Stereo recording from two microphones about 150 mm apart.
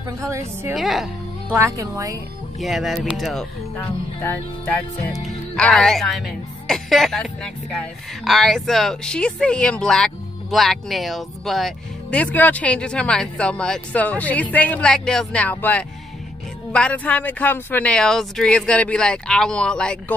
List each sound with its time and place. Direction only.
0.3 s a woman's voice: 20° right (ahead or behind)
0.7 s speech: centre (ahead or behind)
1.5 s speech: 20° right (ahead or behind)
2.6 s speech: centre (ahead or behind)
3.7 s speech: 15° left (ahead or behind)